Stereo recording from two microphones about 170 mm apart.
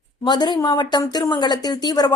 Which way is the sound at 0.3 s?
25° left (ahead or behind).